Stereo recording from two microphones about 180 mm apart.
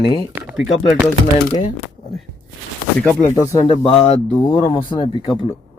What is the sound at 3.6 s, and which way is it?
Speech, 30° left (ahead or behind).